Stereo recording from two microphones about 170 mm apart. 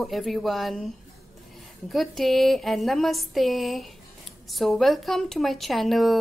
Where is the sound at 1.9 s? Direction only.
Centre (ahead or behind).